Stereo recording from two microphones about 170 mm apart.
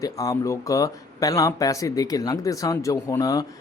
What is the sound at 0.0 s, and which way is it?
Speech, 20° left (ahead or behind).